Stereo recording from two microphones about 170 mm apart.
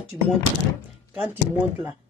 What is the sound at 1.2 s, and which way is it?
Speech, 5° right (ahead or behind).